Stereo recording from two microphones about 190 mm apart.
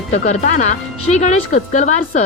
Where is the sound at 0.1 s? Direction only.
40° left (ahead or behind).